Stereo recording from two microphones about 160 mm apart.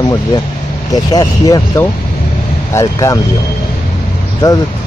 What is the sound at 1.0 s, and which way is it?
Speech, 25° left (ahead or behind).